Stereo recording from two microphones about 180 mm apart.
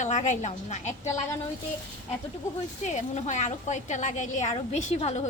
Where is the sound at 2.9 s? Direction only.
40° left (ahead or behind).